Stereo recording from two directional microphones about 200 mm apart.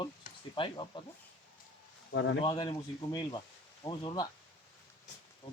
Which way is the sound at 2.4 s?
20° left (ahead or behind).